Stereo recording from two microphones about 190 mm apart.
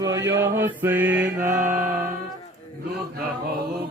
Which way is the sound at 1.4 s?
45° right (ahead or behind).